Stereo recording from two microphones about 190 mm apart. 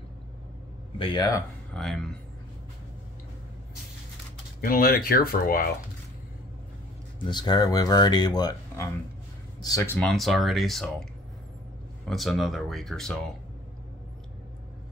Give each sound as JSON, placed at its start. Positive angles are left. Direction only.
{"t": 0.9, "sound": "speech", "side_deg": 25}
{"t": 1.7, "sound": "speech", "side_deg": 0}
{"t": 4.6, "sound": "speech", "side_deg": 50}
{"t": 7.2, "sound": "speech", "side_deg": 25}
{"t": 9.9, "sound": "speech", "side_deg": 0}
{"t": 12.1, "sound": "speech", "side_deg": 0}